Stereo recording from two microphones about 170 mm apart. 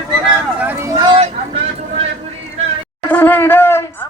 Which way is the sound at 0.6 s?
15° right (ahead or behind).